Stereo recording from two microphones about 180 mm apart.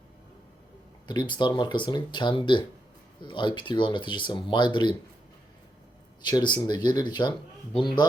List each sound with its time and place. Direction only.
1.0 s speech: 25° left (ahead or behind)
6.2 s speech: 25° left (ahead or behind)